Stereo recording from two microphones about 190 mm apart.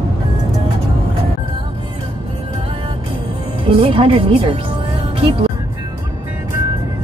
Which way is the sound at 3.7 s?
25° right (ahead or behind).